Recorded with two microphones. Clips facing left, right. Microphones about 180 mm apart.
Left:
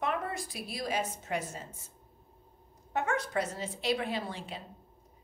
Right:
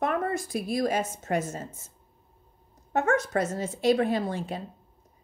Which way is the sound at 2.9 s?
45° right (ahead or behind).